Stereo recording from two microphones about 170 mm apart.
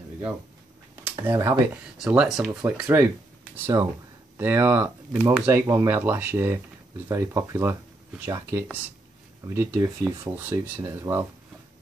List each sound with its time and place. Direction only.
1.1 s speech: 15° right (ahead or behind)
2.6 s speech: 15° right (ahead or behind)